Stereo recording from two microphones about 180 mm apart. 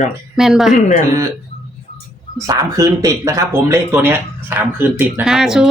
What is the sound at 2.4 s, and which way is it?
Speech, 20° right (ahead or behind).